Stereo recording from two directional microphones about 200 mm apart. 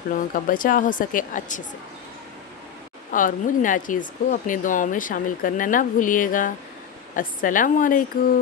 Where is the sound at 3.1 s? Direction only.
40° left (ahead or behind).